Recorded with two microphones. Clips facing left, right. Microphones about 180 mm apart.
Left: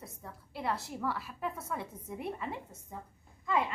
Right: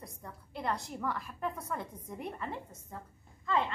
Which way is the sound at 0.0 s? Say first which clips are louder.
Even; 5° left (ahead or behind).